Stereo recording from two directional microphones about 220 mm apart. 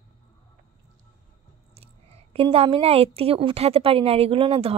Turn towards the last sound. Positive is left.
turn(degrees=-25)  # may be behind; listen again after turning